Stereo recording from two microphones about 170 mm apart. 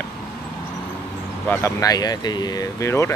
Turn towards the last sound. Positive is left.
turn(degrees=15)  # may be behind; listen again after turning